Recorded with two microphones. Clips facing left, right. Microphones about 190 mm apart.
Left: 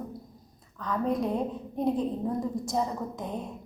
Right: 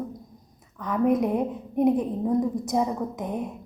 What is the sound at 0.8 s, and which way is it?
A woman's voice, 20° right (ahead or behind).